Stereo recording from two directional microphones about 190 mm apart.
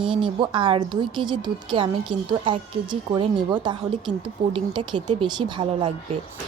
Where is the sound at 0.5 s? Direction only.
25° right (ahead or behind).